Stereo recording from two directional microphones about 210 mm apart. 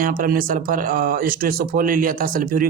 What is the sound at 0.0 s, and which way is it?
Speech, 40° right (ahead or behind).